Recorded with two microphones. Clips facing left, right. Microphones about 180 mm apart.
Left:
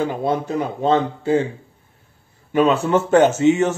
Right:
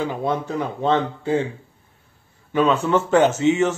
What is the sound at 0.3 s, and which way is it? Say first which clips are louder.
Speech: left 2 dB; 10° left (ahead or behind).